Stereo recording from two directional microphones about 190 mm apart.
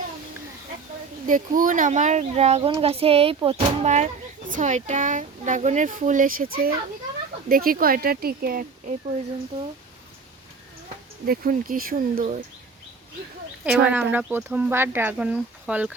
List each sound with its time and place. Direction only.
1.3 s speech: 45° right (ahead or behind)
11.3 s speech: 50° right (ahead or behind)
13.7 s speech: 5° right (ahead or behind)